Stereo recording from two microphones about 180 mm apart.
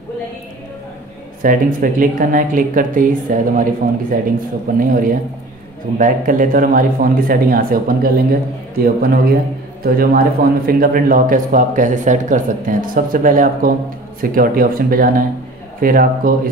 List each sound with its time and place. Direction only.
1.4 s a man's voice: 50° right (ahead or behind)